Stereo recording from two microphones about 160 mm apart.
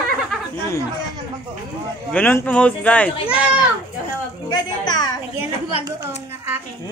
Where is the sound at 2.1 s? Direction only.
10° left (ahead or behind).